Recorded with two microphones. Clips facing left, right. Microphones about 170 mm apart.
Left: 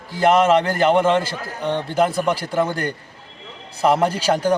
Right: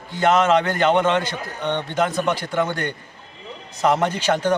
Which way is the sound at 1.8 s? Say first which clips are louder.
Left 5 dB; 30° left (ahead or behind).